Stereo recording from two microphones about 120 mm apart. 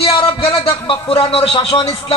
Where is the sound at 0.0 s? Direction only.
50° left (ahead or behind).